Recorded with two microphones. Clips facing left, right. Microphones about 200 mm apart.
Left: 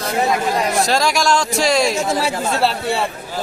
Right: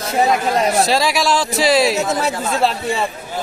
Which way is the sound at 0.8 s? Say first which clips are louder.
Even; centre (ahead or behind).